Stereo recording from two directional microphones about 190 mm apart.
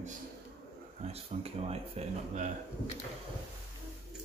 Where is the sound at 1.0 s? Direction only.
35° right (ahead or behind).